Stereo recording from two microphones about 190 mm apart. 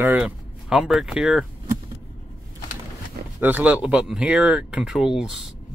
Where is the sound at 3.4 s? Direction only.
10° right (ahead or behind).